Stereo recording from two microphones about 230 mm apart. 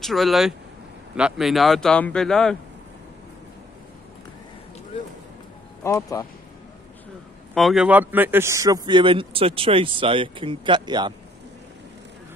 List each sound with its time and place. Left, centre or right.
0.0 s a man's voice: centre
5.9 s speech: centre
7.5 s a man's voice: centre